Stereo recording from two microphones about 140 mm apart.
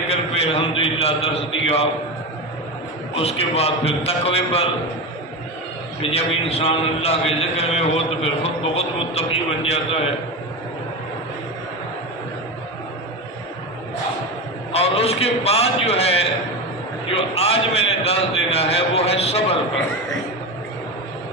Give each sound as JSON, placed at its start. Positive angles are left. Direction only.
{"t": 0.1, "sound": "a sound", "side_deg": 45}
{"t": 3.2, "sound": "a man's voice", "side_deg": 45}
{"t": 6.0, "sound": "a man's voice", "side_deg": 45}
{"t": 14.7, "sound": "a man's voice", "side_deg": 45}